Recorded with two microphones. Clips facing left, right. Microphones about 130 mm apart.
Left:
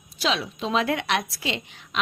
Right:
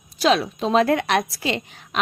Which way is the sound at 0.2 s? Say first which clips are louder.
Right 7 dB; 45° right (ahead or behind).